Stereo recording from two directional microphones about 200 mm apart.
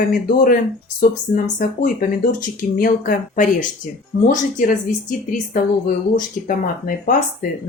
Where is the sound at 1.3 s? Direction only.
45° left (ahead or behind).